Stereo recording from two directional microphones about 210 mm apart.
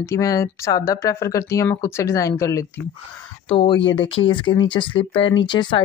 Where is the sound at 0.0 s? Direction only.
15° left (ahead or behind).